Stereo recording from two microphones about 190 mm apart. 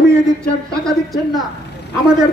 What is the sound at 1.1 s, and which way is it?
Speech, centre (ahead or behind).